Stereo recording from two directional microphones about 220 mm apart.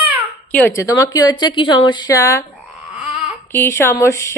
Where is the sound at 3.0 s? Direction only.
5° right (ahead or behind).